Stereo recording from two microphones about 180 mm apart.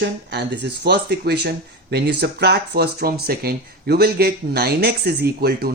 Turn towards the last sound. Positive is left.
turn(degrees=-60)  # may be behind; listen again after turning